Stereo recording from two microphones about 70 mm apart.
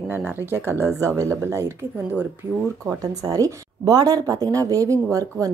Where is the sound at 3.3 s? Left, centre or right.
Right.